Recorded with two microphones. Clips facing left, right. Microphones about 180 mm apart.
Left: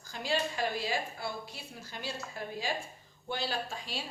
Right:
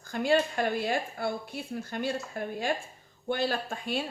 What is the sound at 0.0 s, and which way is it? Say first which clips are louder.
Speech: right 8 dB; 55° right (ahead or behind).